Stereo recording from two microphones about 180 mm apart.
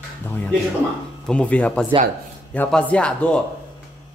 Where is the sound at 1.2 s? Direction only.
5° left (ahead or behind).